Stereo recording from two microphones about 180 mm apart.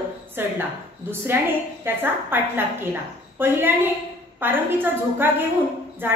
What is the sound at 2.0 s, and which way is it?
A woman's voice, 10° right (ahead or behind).